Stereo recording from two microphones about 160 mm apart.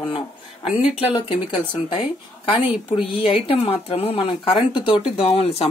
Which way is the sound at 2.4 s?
35° left (ahead or behind).